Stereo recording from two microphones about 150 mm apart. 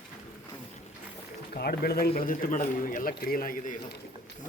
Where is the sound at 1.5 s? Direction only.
90° left; by 3.8 s 70° left (ahead or behind).